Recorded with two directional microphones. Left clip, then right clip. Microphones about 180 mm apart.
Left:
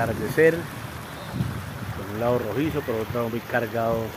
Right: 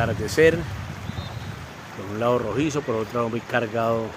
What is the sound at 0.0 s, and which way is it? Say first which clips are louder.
Speech: right 1 dB; 10° right (ahead or behind).